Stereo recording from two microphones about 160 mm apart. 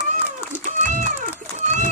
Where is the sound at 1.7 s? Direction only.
50° right (ahead or behind).